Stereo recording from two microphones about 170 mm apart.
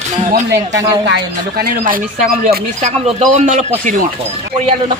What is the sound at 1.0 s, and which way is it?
Speech, 70° right (ahead or behind).